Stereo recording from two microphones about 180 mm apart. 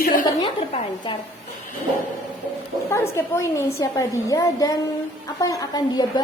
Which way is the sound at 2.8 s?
15° left (ahead or behind).